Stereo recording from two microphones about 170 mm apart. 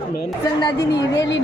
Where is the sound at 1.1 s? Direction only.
90° left.